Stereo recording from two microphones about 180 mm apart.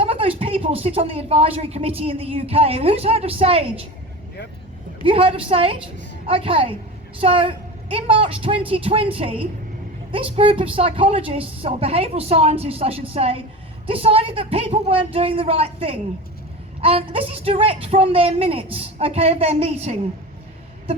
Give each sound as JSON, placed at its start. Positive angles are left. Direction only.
{"t": 0.0, "sound": "a woman's voice", "side_deg": -30}
{"t": 5.0, "sound": "a woman's voice", "side_deg": -30}